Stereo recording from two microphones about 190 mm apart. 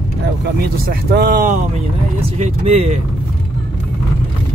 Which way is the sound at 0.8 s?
55° right (ahead or behind).